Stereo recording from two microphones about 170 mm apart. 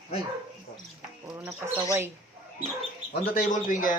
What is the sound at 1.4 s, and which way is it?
Speech, 20° right (ahead or behind).